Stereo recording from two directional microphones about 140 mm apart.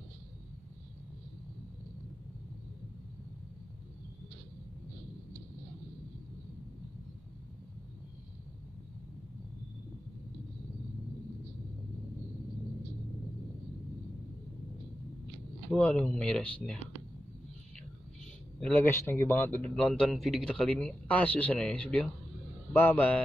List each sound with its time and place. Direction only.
15.7 s speech: 10° left (ahead or behind)
18.6 s speech: 15° left (ahead or behind)